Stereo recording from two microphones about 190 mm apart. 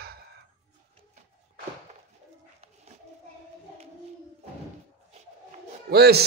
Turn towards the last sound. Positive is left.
turn(degrees=-55)  # may be behind; listen again after turning